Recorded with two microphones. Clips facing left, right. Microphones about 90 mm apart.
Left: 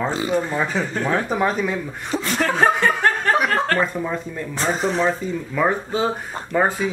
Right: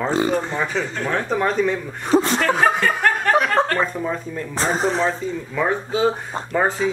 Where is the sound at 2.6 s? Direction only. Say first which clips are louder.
Left 1 dB; 25° left (ahead or behind).